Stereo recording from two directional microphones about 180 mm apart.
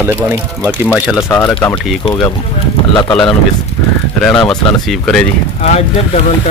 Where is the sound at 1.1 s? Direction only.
15° left (ahead or behind).